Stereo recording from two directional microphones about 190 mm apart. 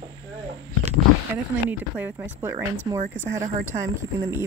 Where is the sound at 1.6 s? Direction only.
10° right (ahead or behind).